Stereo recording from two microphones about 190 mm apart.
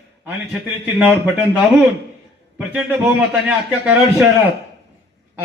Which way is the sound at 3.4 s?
10° right (ahead or behind).